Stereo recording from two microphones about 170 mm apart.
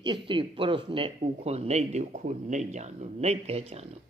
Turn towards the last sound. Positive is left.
turn(degrees=-40)  # may be behind; listen again after turning